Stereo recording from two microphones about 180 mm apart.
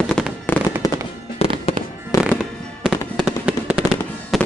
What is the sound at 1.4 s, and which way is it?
Fireworks, 35° left (ahead or behind).